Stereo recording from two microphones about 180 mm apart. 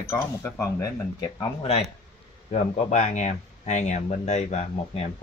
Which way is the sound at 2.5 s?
40° left (ahead or behind).